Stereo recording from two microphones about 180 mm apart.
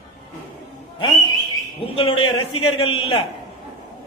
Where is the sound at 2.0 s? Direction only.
30° left (ahead or behind).